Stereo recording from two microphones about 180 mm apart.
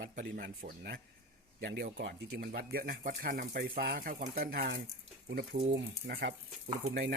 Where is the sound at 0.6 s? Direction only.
65° right (ahead or behind).